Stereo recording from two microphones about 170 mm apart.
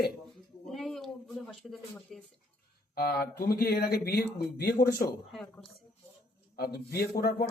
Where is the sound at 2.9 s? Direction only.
65° left (ahead or behind).